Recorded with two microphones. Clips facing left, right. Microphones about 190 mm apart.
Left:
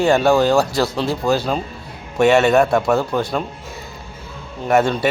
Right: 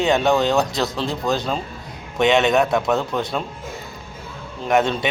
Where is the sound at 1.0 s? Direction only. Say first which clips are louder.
Left 4 dB; 5° left (ahead or behind).